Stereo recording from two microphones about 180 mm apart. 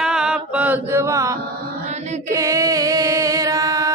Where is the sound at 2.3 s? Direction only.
15° right (ahead or behind).